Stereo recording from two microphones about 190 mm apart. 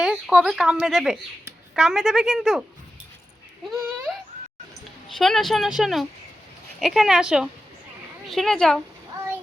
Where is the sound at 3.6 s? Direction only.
Centre (ahead or behind).